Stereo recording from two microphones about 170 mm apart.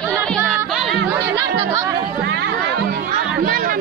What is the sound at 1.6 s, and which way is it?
Chatter, 15° right (ahead or behind).